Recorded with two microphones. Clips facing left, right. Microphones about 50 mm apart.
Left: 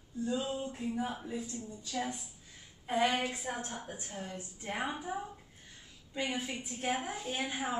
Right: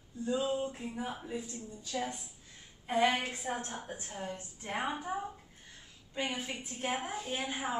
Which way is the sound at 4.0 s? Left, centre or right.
Centre.